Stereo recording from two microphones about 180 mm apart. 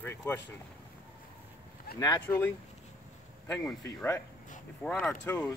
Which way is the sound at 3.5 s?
5° left (ahead or behind).